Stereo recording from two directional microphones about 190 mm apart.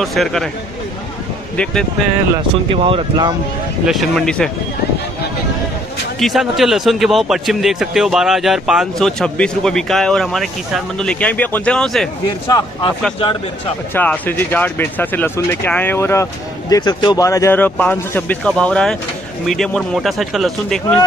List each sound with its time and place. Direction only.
0.0 s speech: centre (ahead or behind)
1.6 s speech: 5° left (ahead or behind)
2.7 s speech: 30° right (ahead or behind)
3.8 s speech: centre (ahead or behind)
6.1 s speech: centre (ahead or behind)
12.4 s speech: 20° left (ahead or behind)
13.9 s speech: 10° left (ahead or behind)